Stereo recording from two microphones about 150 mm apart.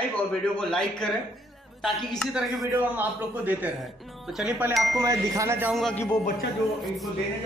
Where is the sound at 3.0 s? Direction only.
10° right (ahead or behind).